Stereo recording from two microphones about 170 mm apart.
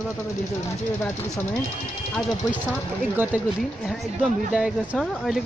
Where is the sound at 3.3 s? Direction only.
10° right (ahead or behind).